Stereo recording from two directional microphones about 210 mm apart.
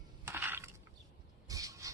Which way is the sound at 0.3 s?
10° right (ahead or behind).